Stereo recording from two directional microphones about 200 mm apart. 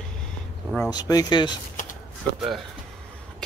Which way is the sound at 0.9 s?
20° left (ahead or behind).